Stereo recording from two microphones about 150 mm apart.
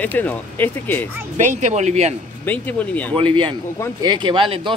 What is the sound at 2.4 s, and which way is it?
Speech, 10° left (ahead or behind).